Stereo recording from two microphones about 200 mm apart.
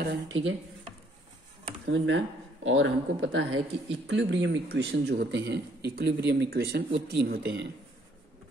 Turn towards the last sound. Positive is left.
turn(degrees=-55)  # may be behind; listen again after turning